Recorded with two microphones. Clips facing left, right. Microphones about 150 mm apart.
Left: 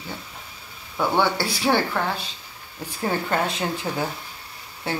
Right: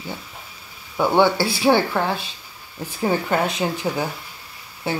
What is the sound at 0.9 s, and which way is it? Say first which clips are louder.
Speech: right 5 dB; 15° right (ahead or behind).